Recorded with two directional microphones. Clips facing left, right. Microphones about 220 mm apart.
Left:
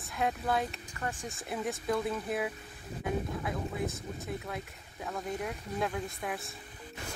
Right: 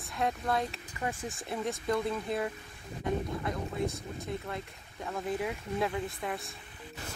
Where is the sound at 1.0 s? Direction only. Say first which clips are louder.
Right 2 dB; 10° right (ahead or behind).